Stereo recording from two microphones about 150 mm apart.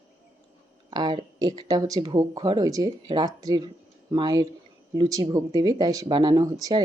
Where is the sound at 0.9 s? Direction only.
30° right (ahead or behind).